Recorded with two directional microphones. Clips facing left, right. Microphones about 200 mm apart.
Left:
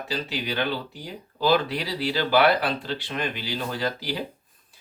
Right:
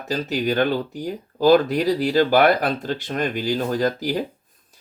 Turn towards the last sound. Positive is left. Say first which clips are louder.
# right 7 dB
turn(degrees=-45)  # may be behind; listen again after turning